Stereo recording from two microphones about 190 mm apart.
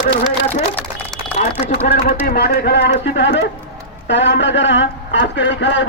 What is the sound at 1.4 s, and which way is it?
A man's voice, 55° left (ahead or behind).